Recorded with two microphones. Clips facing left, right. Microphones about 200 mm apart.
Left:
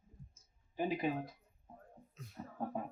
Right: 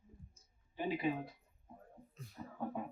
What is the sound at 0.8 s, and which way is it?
Speech, 40° left (ahead or behind).